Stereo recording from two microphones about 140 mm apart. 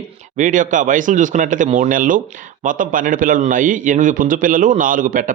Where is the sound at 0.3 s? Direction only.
65° right (ahead or behind).